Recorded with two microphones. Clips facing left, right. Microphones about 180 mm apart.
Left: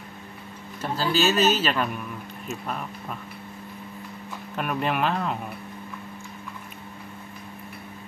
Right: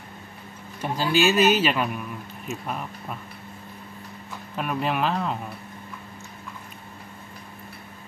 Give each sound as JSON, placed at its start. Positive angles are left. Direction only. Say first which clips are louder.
{"t": 0.8, "sound": "a man's voice", "louder": "right 2 dB", "side_deg": -10}
{"t": 4.6, "sound": "speech", "louder": "even", "side_deg": 0}